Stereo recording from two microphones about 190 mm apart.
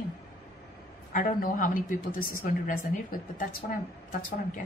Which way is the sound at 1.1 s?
45° left (ahead or behind).